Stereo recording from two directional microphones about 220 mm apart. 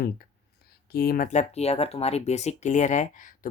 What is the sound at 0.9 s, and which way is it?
Speech, 45° left (ahead or behind).